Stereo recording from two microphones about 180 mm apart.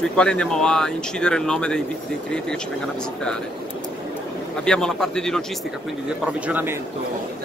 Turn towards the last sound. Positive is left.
turn(degrees=-10)  # may be behind; listen again after turning